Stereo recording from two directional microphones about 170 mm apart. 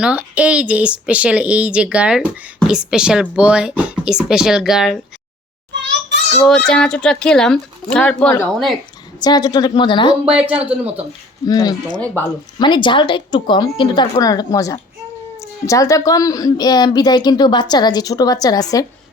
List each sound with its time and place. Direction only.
0.0 s speech: 5° right (ahead or behind)
5.7 s a sound: 90° right
6.4 s speech: 5° left (ahead or behind)
9.2 s speech: 25° left (ahead or behind)
10.3 s speech: 5° right (ahead or behind)
11.4 s speech: 25° left (ahead or behind)
11.9 s speech: 10° left (ahead or behind)
12.5 s speech: 25° left (ahead or behind)